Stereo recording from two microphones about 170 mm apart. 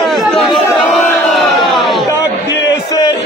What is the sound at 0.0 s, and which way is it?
Chatter, centre (ahead or behind).